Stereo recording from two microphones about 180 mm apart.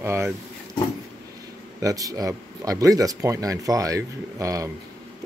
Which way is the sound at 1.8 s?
20° right (ahead or behind).